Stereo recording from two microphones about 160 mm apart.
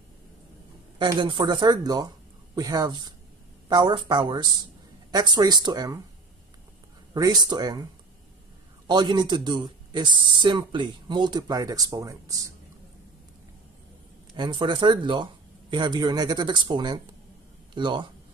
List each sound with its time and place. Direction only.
0.9 s speech: 30° right (ahead or behind)
7.2 s speech: 25° right (ahead or behind)
8.8 s speech: 25° right (ahead or behind)
14.3 s speech: 30° right (ahead or behind)